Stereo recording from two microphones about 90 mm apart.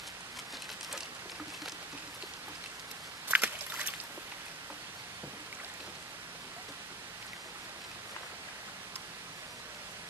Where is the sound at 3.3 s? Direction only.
15° right (ahead or behind).